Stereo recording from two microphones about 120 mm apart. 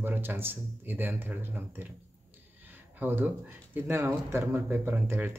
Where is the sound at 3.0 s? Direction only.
15° right (ahead or behind).